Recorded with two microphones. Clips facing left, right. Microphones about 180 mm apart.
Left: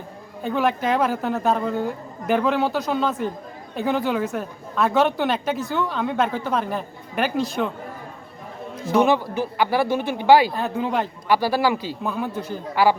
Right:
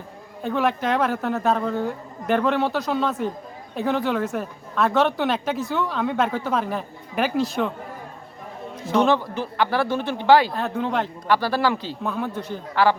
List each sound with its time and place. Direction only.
0.4 s a woman's voice: centre (ahead or behind)
8.7 s a man's voice: 5° left (ahead or behind)